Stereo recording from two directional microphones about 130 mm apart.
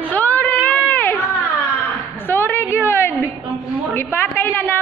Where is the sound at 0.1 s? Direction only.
15° left (ahead or behind).